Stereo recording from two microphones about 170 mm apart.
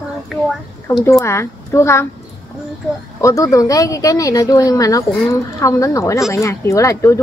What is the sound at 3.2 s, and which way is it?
Speech, 20° left (ahead or behind).